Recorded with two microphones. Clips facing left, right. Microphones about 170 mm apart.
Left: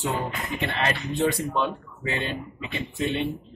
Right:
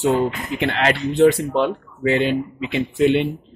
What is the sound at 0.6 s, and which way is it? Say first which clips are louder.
Speech: right 8 dB; 90° right.